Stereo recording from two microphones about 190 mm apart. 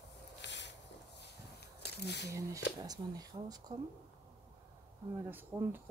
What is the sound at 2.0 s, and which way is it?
Speech, 60° left (ahead or behind).